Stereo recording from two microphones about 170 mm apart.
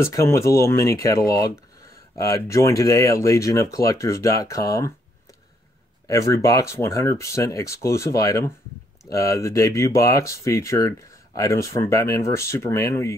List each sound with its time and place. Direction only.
0.0 s speech: 15° left (ahead or behind)
6.0 s speech: 20° left (ahead or behind)